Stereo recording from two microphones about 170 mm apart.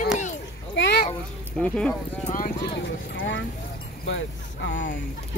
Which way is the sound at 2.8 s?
90° left.